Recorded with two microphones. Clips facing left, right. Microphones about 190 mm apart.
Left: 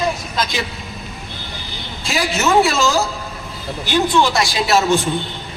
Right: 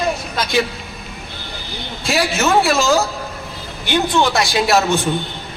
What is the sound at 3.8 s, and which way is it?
Speech, 60° right (ahead or behind).